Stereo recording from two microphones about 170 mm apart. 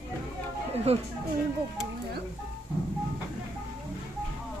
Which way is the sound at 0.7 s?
40° right (ahead or behind).